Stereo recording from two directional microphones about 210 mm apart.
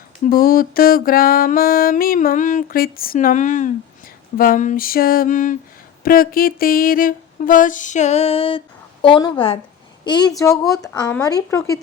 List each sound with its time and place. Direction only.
0.3 s music: 45° left (ahead or behind)
6.0 s a sound: 45° left (ahead or behind); by 9.6 s 25° left (ahead or behind)
10.0 s speech: 20° left (ahead or behind)